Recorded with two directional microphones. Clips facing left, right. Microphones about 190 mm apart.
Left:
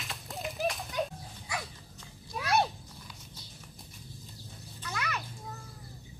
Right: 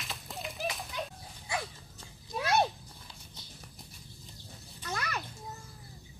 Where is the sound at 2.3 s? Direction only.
30° right (ahead or behind).